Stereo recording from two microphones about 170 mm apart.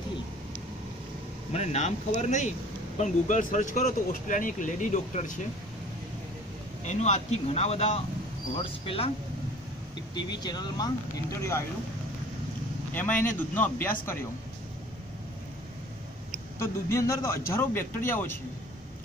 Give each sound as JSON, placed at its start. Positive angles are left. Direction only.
{"t": 1.5, "sound": "speech", "side_deg": 40}
{"t": 6.8, "sound": "speech", "side_deg": 45}
{"t": 10.4, "sound": "speech", "side_deg": 25}
{"t": 12.9, "sound": "speech", "side_deg": 10}
{"t": 16.5, "sound": "speech", "side_deg": 15}